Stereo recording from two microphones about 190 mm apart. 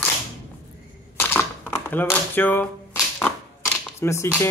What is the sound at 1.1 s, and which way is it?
Camera, 10° left (ahead or behind).